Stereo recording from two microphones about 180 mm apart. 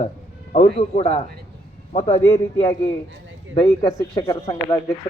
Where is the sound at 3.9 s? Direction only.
20° left (ahead or behind).